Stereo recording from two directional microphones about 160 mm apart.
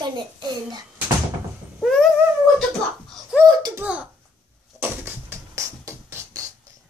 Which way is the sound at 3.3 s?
5° right (ahead or behind).